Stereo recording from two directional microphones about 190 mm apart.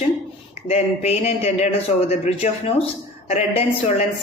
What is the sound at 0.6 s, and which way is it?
Speech, 35° left (ahead or behind).